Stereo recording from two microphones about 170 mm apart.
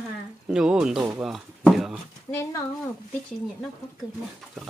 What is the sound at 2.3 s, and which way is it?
Speech, 20° left (ahead or behind).